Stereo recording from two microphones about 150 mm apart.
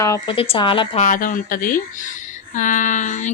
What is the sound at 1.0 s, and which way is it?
Speech, 65° left (ahead or behind).